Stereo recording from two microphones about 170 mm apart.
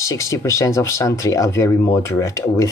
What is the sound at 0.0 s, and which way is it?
Speech, 15° left (ahead or behind).